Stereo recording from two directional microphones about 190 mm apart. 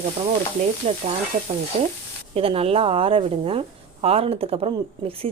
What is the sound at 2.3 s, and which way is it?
A woman's voice, 30° right (ahead or behind).